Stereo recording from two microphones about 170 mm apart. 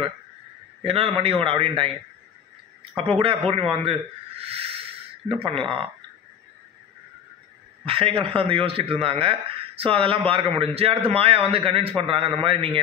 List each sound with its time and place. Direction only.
0.8 s speech: 35° right (ahead or behind)
3.4 s speech: 35° right (ahead or behind)
4.4 s a sound: 35° right (ahead or behind)
5.3 s speech: 30° right (ahead or behind)
7.8 s speech: 35° right (ahead or behind)